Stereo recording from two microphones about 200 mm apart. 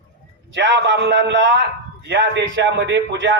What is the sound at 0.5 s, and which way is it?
A man's voice, 65° right (ahead or behind).